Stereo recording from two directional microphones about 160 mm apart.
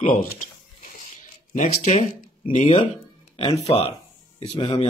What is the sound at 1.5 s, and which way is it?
Speech, 50° left (ahead or behind).